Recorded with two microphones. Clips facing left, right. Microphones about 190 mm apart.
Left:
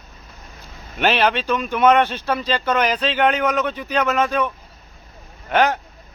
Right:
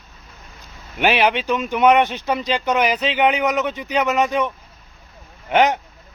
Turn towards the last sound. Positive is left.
turn(degrees=-20)  # may be behind; listen again after turning